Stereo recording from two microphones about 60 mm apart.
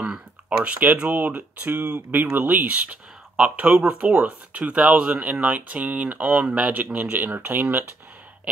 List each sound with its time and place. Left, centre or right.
0.5 s speech: right